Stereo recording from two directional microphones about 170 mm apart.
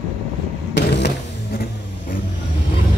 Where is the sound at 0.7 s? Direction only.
90° left.